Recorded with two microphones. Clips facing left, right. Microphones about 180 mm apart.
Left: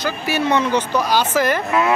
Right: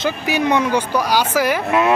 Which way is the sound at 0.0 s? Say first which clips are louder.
Right 2 dB; 15° right (ahead or behind).